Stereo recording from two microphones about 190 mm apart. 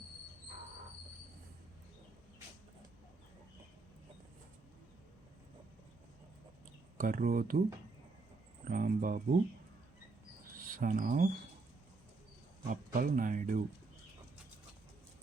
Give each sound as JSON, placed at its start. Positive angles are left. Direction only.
{"t": 7.0, "sound": "speech", "side_deg": -50}
{"t": 8.6, "sound": "speech", "side_deg": -45}
{"t": 10.8, "sound": "speech", "side_deg": -45}
{"t": 12.6, "sound": "speech", "side_deg": -45}